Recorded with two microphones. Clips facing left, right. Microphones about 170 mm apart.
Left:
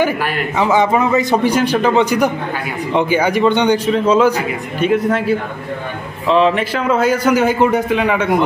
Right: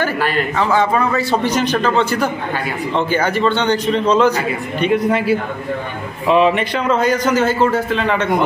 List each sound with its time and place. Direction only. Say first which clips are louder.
0.0 s a man's voice: left 1 dB; 10° left (ahead or behind); by 6.6 s 10° right (ahead or behind)
6.6 s a man's voice: left 1 dB; 5° left (ahead or behind)